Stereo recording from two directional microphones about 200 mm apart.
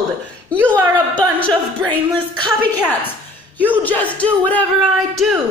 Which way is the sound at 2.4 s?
20° right (ahead or behind).